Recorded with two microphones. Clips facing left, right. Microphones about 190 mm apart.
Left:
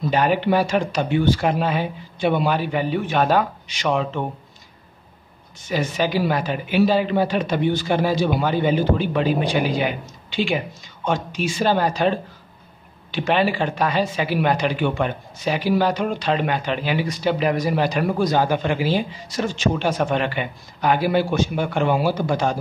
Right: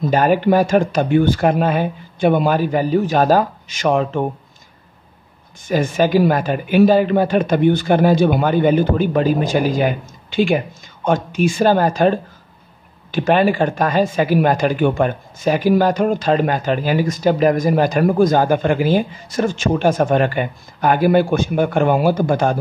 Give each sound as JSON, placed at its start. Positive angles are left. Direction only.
{"t": 0.0, "sound": "speech", "side_deg": -45}
{"t": 5.7, "sound": "speech", "side_deg": -50}